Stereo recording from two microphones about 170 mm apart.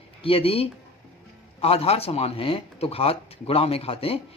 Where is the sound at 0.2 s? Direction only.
35° left (ahead or behind).